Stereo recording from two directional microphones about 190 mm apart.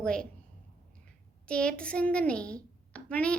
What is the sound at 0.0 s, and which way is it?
Speech, 5° left (ahead or behind).